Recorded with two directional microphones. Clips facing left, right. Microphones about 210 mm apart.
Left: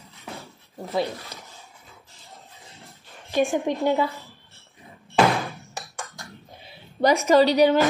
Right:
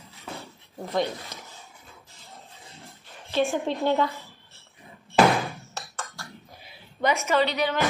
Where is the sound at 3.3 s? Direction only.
15° left (ahead or behind).